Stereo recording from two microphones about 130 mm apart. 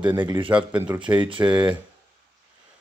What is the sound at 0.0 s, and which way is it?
Speech, 35° right (ahead or behind).